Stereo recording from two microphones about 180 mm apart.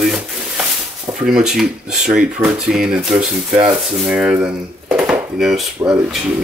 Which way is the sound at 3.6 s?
5° right (ahead or behind).